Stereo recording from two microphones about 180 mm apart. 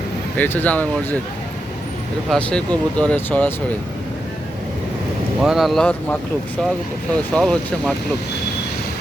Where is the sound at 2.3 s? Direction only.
5° left (ahead or behind).